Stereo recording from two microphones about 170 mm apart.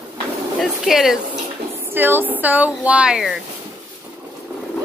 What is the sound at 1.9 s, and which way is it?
Speech, 10° right (ahead or behind).